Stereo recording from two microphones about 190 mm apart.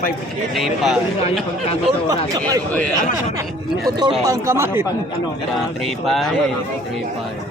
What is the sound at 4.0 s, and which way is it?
Speech, 20° right (ahead or behind).